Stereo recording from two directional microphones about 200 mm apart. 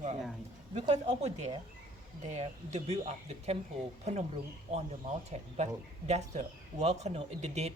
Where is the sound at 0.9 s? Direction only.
35° right (ahead or behind).